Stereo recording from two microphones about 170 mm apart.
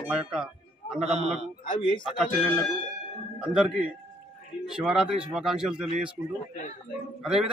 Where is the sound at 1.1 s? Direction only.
40° right (ahead or behind).